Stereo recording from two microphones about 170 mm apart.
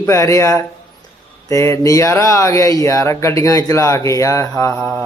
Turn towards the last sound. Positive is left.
turn(degrees=5)  # may be behind; listen again after turning